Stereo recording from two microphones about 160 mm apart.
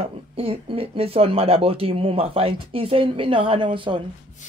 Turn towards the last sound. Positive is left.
turn(degrees=-30)  # may be behind; listen again after turning